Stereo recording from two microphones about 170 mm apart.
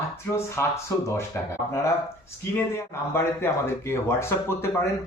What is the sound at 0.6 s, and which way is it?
Speech, 15° left (ahead or behind).